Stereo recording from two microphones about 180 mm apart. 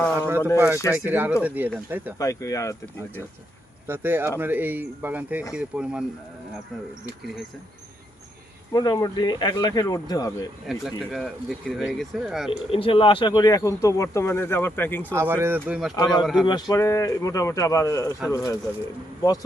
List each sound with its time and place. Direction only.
0.2 s speech: 10° right (ahead or behind)
2.1 s speech: 20° left (ahead or behind)
3.8 s speech: 10° right (ahead or behind)
8.7 s speech: 20° left (ahead or behind)
10.7 s speech: centre (ahead or behind)
12.5 s speech: 30° left (ahead or behind); by 15.0 s 10° left (ahead or behind)
15.1 s speech: 15° right (ahead or behind)
16.0 s speech: 25° left (ahead or behind)
16.2 s speech: 5° right (ahead or behind)
16.5 s speech: 20° left (ahead or behind)